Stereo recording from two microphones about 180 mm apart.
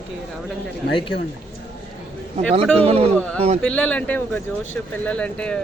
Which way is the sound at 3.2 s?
10° left (ahead or behind).